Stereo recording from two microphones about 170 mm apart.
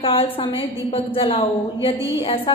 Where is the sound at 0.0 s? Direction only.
30° left (ahead or behind).